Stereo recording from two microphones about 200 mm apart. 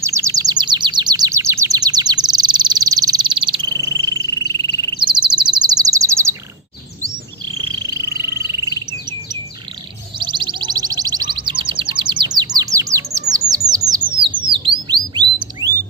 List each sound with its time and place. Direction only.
0.0 s bird: 15° right (ahead or behind)
7.4 s frog: 20° right (ahead or behind)
10.1 s music: 25° right (ahead or behind)
13.3 s bird: 20° right (ahead or behind)